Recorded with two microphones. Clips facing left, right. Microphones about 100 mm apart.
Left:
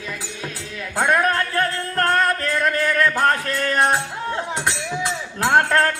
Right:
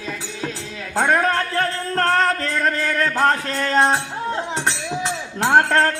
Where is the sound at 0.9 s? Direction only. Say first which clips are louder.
Right 1 dB; 30° right (ahead or behind).